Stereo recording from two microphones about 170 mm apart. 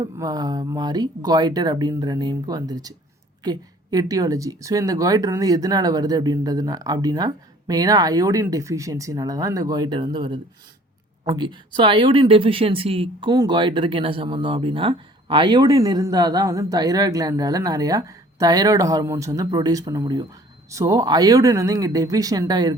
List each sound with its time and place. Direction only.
0.0 s speech: 25° right (ahead or behind)